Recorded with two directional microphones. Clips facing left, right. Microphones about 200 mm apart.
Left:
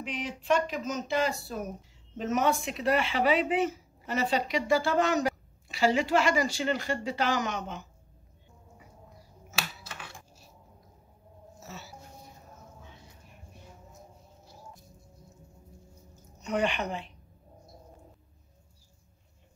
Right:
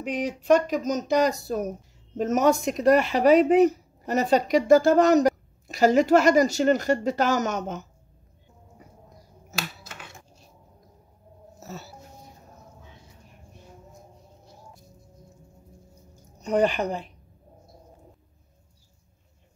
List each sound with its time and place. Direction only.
0.0 s speech: 45° right (ahead or behind)
9.6 s a sound: centre (ahead or behind)
11.6 s music: 40° right (ahead or behind)
16.3 s a woman's voice: 35° right (ahead or behind)